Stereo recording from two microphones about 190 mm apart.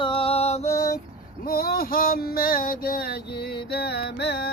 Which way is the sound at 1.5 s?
50° left (ahead or behind).